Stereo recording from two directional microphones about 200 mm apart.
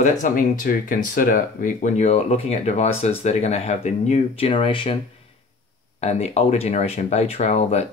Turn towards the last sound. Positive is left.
turn(degrees=30)  # may be behind; listen again after turning